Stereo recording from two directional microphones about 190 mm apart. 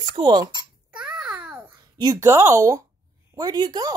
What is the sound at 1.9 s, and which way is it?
Speech, 20° right (ahead or behind).